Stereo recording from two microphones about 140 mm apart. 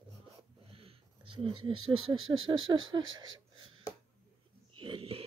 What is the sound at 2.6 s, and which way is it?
Speech, 35° right (ahead or behind).